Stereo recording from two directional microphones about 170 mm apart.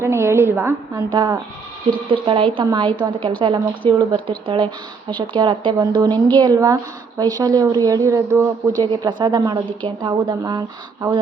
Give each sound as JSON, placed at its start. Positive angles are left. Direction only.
{"t": 0.0, "sound": "a woman's voice", "side_deg": -15}